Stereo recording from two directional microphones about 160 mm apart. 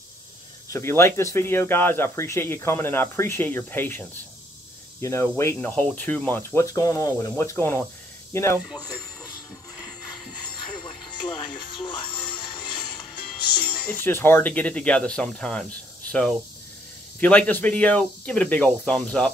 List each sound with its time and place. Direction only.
0.7 s speech: 15° left (ahead or behind)
9.8 s music: 25° left (ahead or behind)
13.8 s speech: 15° left (ahead or behind)